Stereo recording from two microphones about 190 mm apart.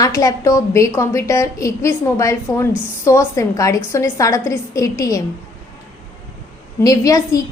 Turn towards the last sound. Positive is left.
turn(degrees=20)  # may be behind; listen again after turning